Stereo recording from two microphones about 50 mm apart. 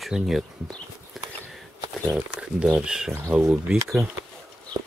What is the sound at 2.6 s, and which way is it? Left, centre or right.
Speech, centre.